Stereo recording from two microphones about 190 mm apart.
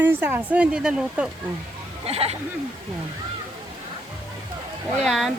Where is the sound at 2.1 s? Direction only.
30° right (ahead or behind).